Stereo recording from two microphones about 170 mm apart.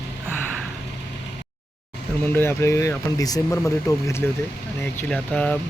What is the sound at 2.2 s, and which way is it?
Speech, 10° left (ahead or behind).